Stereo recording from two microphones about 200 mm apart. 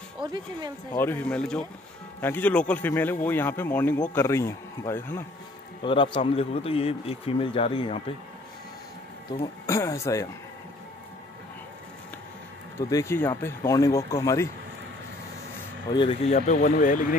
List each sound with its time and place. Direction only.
0.2 s speech: 20° right (ahead or behind)
0.9 s speech: 10° left (ahead or behind)
5.8 s speech: 25° left (ahead or behind)
9.7 s speech: 15° left (ahead or behind)
12.9 s speech: 15° left (ahead or behind)
15.9 s speech: 25° left (ahead or behind); by 17.2 s 40° left (ahead or behind)